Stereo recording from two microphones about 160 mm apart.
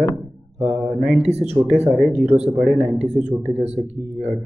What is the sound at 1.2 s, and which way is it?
Speech, 40° right (ahead or behind).